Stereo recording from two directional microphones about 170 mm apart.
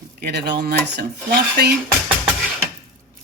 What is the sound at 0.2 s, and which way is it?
Speech, 75° right (ahead or behind).